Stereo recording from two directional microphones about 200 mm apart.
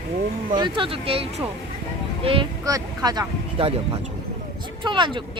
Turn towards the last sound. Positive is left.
turn(degrees=-25)  # may be behind; listen again after turning